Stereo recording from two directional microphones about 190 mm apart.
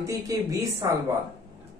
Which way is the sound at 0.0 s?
15° right (ahead or behind).